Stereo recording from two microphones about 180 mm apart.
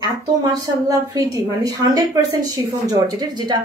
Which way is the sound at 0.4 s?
20° right (ahead or behind).